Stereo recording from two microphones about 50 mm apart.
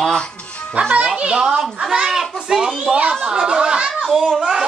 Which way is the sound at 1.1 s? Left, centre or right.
Centre.